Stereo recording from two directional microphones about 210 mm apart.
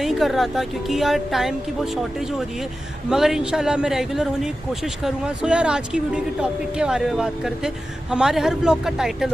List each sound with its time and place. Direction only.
0.0 s a man's voice: centre (ahead or behind)
3.1 s a man's voice: centre (ahead or behind)